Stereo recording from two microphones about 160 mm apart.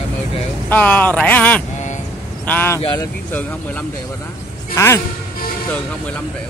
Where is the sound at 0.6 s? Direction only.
10° left (ahead or behind).